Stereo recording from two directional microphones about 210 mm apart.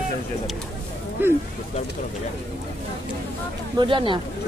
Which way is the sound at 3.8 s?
25° right (ahead or behind).